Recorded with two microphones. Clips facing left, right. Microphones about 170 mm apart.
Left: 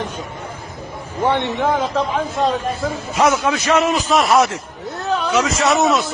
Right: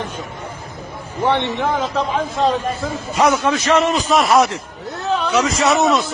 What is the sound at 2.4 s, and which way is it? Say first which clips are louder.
A man's voice: right 1 dB; centre (ahead or behind).